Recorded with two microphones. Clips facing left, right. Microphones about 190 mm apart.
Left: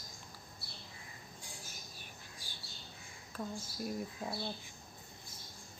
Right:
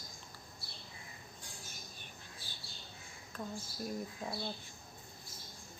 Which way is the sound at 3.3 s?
5° left (ahead or behind).